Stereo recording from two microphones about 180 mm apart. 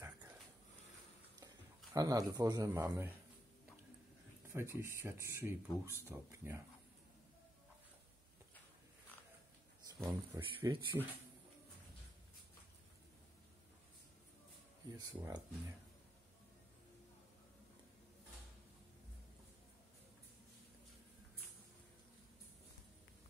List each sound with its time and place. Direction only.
0.0 s dog: 10° right (ahead or behind)
2.0 s speech: 20° right (ahead or behind)
4.5 s speech: 15° right (ahead or behind)
10.0 s speech: 15° right (ahead or behind)
14.9 s speech: 20° right (ahead or behind)